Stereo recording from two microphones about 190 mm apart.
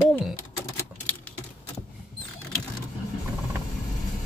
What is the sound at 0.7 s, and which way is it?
Typewriter, 10° left (ahead or behind).